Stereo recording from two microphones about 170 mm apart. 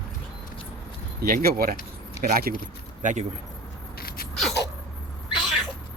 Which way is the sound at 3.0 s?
45° right (ahead or behind).